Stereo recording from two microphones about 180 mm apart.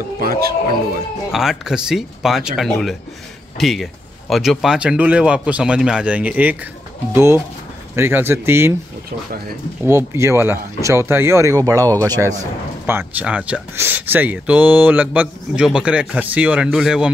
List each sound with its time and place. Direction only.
0.2 s a man's voice: 55° right (ahead or behind)
1.3 s speech: centre (ahead or behind)
9.8 s speech: 15° right (ahead or behind)